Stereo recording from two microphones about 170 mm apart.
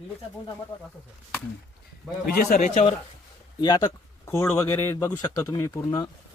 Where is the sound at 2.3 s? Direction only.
60° left (ahead or behind).